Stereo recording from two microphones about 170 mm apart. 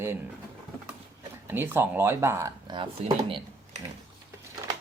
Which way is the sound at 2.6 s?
30° right (ahead or behind).